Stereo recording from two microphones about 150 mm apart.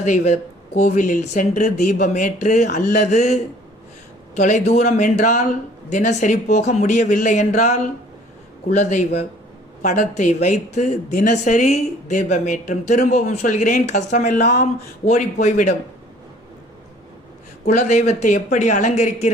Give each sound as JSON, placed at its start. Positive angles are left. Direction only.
{"t": 0.0, "sound": "speech", "side_deg": 50}
{"t": 17.7, "sound": "speech", "side_deg": 55}